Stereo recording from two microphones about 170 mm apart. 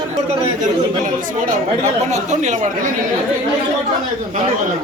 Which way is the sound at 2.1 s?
45° right (ahead or behind).